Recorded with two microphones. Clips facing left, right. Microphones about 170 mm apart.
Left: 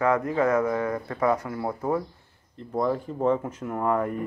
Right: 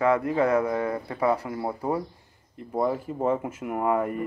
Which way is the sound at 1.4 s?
20° right (ahead or behind).